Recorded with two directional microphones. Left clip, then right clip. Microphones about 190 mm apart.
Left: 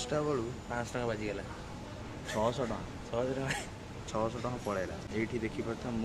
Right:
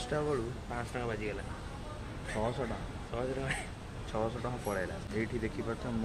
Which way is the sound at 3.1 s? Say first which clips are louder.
Left 4 dB; 35° left (ahead or behind).